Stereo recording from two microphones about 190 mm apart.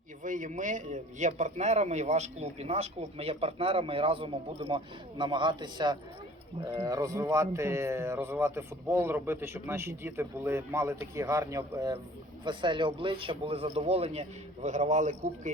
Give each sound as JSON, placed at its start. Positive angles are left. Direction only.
{"t": 0.2, "sound": "a man's voice", "side_deg": -40}